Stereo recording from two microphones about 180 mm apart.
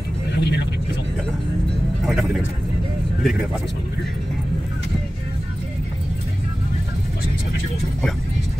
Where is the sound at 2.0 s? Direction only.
Centre (ahead or behind).